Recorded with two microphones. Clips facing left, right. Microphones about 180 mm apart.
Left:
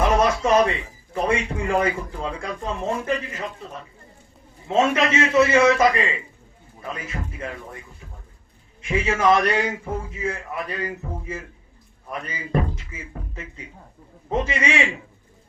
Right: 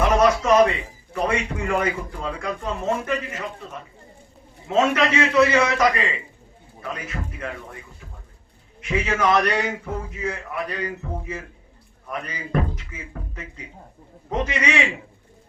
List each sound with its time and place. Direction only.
0.0 s a sound: 30° left (ahead or behind)
0.7 s a man's voice: 30° left (ahead or behind)
4.7 s a man's voice: 25° left (ahead or behind)
6.9 s a man's voice: 25° left (ahead or behind)
8.8 s a man's voice: 25° left (ahead or behind)